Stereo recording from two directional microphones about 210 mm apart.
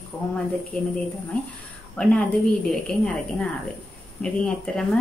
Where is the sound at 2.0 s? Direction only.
5° left (ahead or behind).